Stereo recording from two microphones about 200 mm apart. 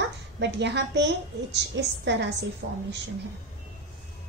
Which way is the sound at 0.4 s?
60° right (ahead or behind).